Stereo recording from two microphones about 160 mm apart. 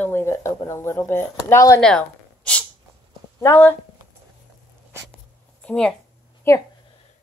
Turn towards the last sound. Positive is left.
turn(degrees=15)  # may be behind; listen again after turning